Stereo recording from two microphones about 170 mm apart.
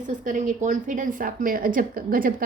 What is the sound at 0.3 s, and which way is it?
A woman's voice, 50° right (ahead or behind).